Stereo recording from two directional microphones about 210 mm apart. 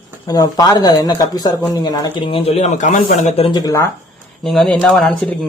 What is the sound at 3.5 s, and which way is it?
Speech, 15° left (ahead or behind).